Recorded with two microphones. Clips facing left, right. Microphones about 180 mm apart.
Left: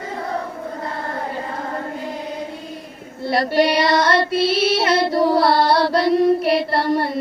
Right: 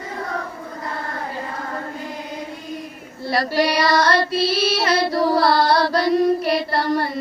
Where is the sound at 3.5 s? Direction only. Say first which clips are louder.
Left 4 dB; centre (ahead or behind).